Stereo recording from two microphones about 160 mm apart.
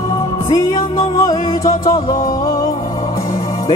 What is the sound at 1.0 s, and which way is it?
Music, 20° left (ahead or behind).